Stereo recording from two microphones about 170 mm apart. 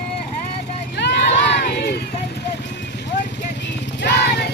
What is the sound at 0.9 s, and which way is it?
Crowd, 80° left.